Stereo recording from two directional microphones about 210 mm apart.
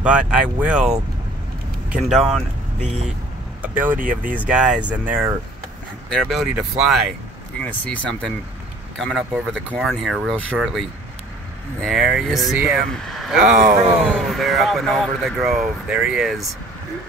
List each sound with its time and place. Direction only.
0.0 s speech: 5° right (ahead or behind)
3.6 s speech: 10° right (ahead or behind)
4.0 s speech: 40° right (ahead or behind)
4.3 s speech: 5° right (ahead or behind)
7.6 s speech: 5° left (ahead or behind)